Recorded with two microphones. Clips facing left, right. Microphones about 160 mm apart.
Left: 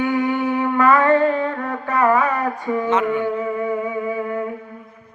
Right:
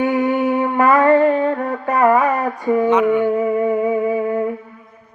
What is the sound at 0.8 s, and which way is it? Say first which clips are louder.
Mantra: right 2 dB; 30° right (ahead or behind).